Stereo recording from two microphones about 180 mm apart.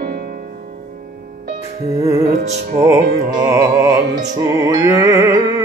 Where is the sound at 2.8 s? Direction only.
15° right (ahead or behind).